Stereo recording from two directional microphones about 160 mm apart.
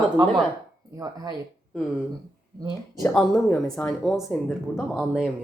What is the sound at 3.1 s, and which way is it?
Speech, 5° left (ahead or behind).